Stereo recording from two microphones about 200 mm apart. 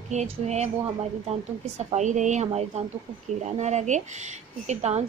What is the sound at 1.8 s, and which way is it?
A woman's voice, 35° right (ahead or behind).